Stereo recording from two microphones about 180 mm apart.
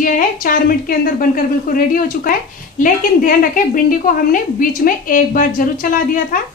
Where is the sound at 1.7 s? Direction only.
50° left (ahead or behind).